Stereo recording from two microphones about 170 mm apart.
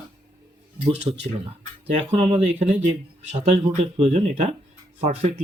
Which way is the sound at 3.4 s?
40° right (ahead or behind).